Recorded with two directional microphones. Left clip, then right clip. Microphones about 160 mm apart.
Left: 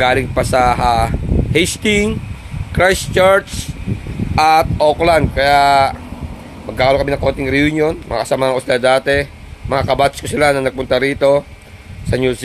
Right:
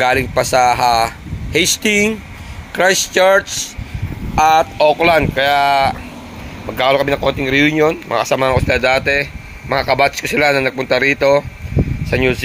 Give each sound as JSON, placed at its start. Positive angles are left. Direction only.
{"t": 0.0, "sound": "speech", "side_deg": 0}
{"t": 4.7, "sound": "a man's voice", "side_deg": 15}